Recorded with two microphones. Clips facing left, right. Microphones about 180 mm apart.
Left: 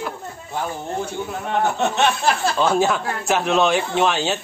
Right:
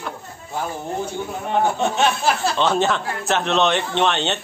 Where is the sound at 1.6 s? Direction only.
10° right (ahead or behind).